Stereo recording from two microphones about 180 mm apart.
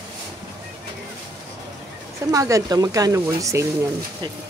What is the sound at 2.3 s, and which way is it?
Speech, 20° right (ahead or behind).